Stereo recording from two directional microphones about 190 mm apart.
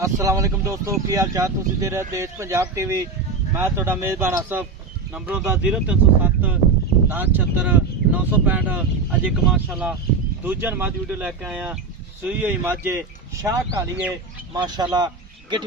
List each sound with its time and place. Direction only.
0.0 s speech: 15° right (ahead or behind)
14.5 s speech: 20° right (ahead or behind)